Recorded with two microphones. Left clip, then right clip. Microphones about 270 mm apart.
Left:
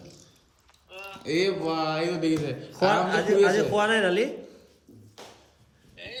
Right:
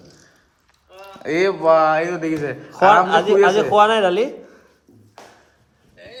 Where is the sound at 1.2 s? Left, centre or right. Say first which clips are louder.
Right 7 dB; centre.